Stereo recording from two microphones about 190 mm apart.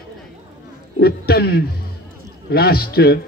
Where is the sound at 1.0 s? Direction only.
55° left (ahead or behind).